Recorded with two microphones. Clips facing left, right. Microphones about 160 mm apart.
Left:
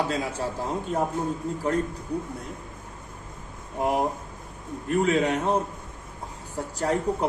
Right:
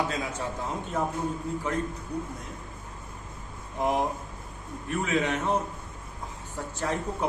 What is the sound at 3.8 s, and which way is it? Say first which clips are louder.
Speech: left 2 dB; 10° left (ahead or behind).